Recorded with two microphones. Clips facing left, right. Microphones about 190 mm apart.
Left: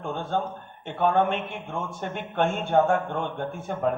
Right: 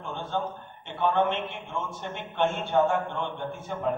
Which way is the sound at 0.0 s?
50° left (ahead or behind).